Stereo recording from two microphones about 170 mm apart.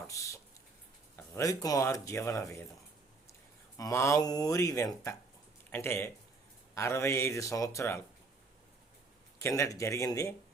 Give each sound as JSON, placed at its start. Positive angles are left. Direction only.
{"t": 0.1, "sound": "speech", "side_deg": 20}
{"t": 1.4, "sound": "speech", "side_deg": 20}
{"t": 3.8, "sound": "speech", "side_deg": 20}
{"t": 9.4, "sound": "speech", "side_deg": 15}